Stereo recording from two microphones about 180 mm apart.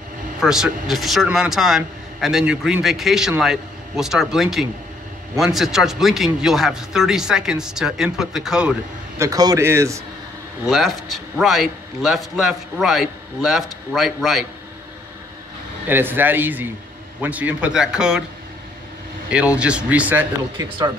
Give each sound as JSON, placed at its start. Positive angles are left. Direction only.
{"t": 0.4, "sound": "speech", "side_deg": -5}
{"t": 9.2, "sound": "a man's voice", "side_deg": -20}
{"t": 10.7, "sound": "speech", "side_deg": 0}
{"t": 15.9, "sound": "a man's voice", "side_deg": -10}
{"t": 19.3, "sound": "a man's voice", "side_deg": -5}